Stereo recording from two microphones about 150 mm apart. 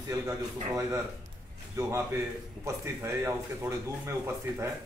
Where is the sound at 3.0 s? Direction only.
15° right (ahead or behind).